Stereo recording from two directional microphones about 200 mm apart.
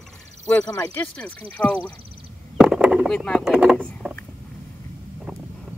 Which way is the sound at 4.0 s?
5° left (ahead or behind).